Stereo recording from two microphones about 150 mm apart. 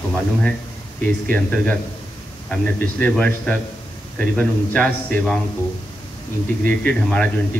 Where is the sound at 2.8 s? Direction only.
10° left (ahead or behind).